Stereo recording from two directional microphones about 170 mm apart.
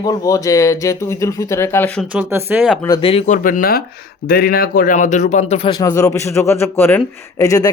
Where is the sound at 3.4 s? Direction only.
55° left (ahead or behind); by 5.6 s 40° left (ahead or behind).